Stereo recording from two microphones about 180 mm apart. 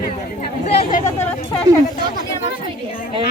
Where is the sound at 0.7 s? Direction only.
40° left (ahead or behind).